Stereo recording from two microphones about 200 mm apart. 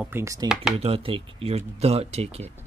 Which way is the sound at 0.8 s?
30° right (ahead or behind).